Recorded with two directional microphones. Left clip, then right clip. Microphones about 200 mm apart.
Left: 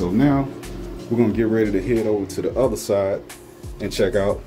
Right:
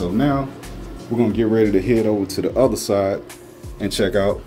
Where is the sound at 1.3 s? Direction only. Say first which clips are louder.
Right 2 dB; 15° right (ahead or behind).